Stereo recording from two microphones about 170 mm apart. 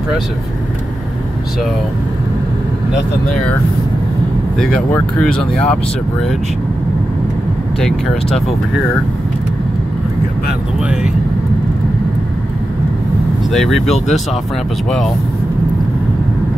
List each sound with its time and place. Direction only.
4.6 s speech: 5° left (ahead or behind)
7.8 s speech: centre (ahead or behind)
13.5 s speech: centre (ahead or behind)